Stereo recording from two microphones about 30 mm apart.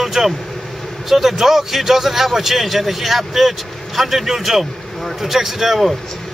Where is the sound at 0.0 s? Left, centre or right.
Centre.